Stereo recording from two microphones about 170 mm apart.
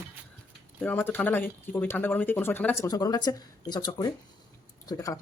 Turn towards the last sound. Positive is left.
turn(degrees=20)  # may be behind; listen again after turning